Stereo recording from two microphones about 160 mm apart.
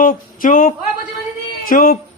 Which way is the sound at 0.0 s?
55° left (ahead or behind).